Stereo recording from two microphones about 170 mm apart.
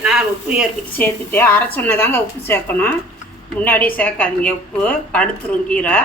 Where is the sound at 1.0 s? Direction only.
10° left (ahead or behind).